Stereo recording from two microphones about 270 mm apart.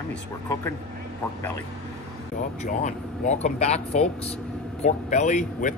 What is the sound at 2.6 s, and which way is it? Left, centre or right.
Speech, left.